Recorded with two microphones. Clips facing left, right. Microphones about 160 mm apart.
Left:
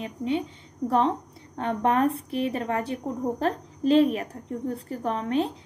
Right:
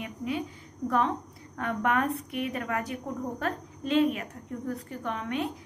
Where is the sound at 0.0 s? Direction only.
25° left (ahead or behind).